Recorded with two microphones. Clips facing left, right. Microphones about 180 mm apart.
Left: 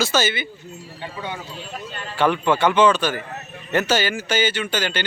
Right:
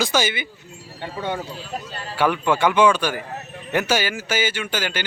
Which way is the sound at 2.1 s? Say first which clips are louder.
Left 1 dB; 10° right (ahead or behind).